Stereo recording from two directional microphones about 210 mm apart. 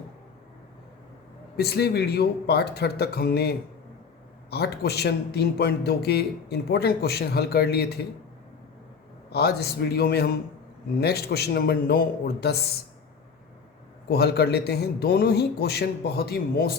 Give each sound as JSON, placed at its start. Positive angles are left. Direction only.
{"t": 1.5, "sound": "a man's voice", "side_deg": 50}
{"t": 9.3, "sound": "a man's voice", "side_deg": 50}
{"t": 14.1, "sound": "a man's voice", "side_deg": 50}